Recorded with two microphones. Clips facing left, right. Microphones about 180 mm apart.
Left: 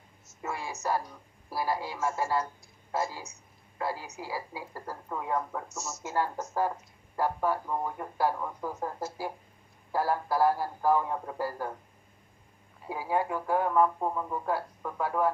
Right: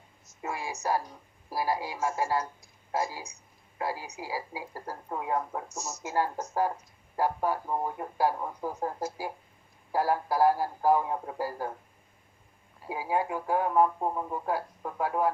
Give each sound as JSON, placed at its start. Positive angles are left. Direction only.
{"t": 0.4, "sound": "speech", "side_deg": -15}
{"t": 12.9, "sound": "speech", "side_deg": -15}